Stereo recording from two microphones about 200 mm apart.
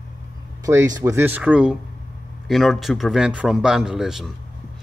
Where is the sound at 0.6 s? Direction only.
15° right (ahead or behind); by 4.3 s centre (ahead or behind).